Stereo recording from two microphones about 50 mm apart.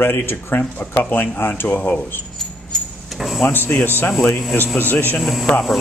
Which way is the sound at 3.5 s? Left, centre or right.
Left.